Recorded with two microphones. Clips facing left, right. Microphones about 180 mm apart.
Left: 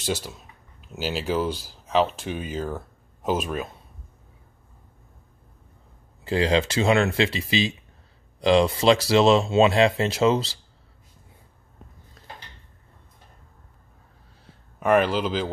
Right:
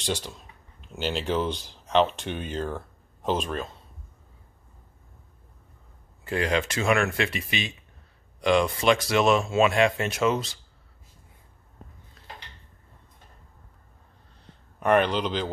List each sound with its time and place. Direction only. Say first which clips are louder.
0.0 s speech: left 2 dB; 5° left (ahead or behind)
6.2 s speech: left 4 dB; 30° left (ahead or behind)
14.4 s a sound: left 1 dB; 5° left (ahead or behind)